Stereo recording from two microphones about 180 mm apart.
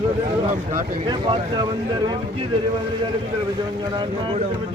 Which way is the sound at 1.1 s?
25° right (ahead or behind).